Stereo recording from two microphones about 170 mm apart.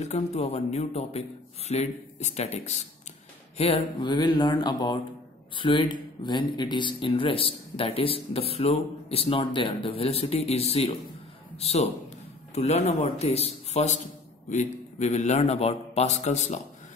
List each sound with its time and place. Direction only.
0.0 s speech: 40° left (ahead or behind)
3.5 s speech: 30° left (ahead or behind)